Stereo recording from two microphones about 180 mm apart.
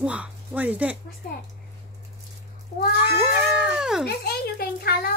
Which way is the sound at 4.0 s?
60° left (ahead or behind).